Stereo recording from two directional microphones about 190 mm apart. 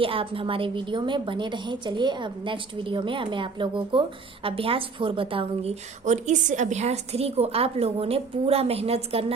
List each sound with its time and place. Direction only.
0.0 s a woman's voice: 30° right (ahead or behind)